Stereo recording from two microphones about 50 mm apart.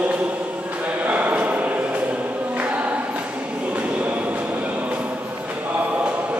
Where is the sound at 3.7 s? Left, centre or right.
Right.